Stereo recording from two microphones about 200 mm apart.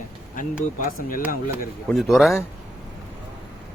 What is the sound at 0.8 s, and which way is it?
Speech, 45° left (ahead or behind).